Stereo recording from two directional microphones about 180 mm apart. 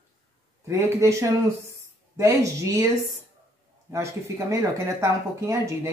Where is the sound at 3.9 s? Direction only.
15° right (ahead or behind).